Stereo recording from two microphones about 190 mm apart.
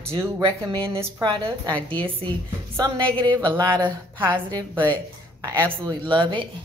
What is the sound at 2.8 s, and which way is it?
Speech, 20° right (ahead or behind).